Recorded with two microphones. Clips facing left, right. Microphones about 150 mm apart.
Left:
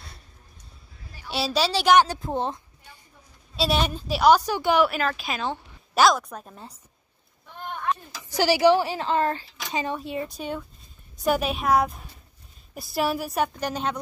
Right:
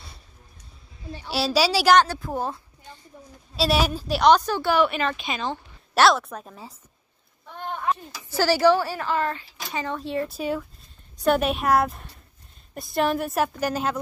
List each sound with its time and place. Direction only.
1.3 s a woman's voice: 5° right (ahead or behind)
2.1 s a woman's voice: 25° left (ahead or behind)
3.5 s a woman's voice: centre (ahead or behind); by 4.8 s 15° left (ahead or behind)
4.8 s a woman's voice: 5° left (ahead or behind)
7.8 s a sound: 10° right (ahead or behind)
8.3 s a woman's voice: 15° left (ahead or behind); by 9.8 s 30° left (ahead or behind)
9.9 s a woman's voice: 5° left (ahead or behind)